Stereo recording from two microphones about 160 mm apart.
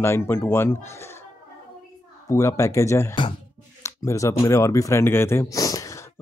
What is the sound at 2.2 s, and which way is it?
Speech, 20° left (ahead or behind).